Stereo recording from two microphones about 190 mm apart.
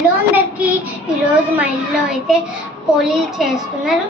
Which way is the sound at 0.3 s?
5° right (ahead or behind).